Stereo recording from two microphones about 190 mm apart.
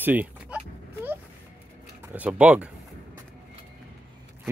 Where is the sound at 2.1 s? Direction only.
5° right (ahead or behind).